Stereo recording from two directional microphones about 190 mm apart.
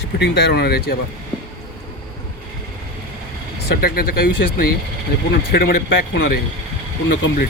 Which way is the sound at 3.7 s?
50° left (ahead or behind).